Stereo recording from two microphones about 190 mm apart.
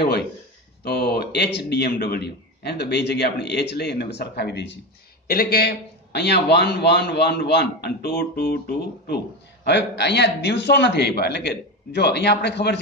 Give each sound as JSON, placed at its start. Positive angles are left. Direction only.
{"t": 0.0, "sound": "a man's voice", "side_deg": 60}